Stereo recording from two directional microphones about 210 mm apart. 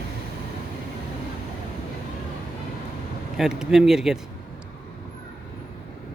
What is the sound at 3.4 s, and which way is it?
Speech, centre (ahead or behind).